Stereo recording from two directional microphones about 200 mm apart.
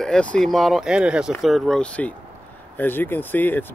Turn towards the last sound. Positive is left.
turn(degrees=10)  # may be behind; listen again after turning